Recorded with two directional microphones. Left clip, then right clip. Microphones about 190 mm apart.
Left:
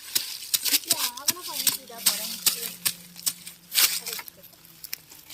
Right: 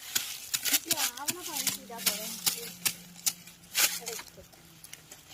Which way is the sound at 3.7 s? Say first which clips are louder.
Left 5 dB; 20° left (ahead or behind).